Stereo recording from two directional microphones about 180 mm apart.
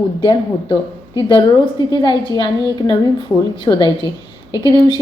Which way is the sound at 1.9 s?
25° left (ahead or behind).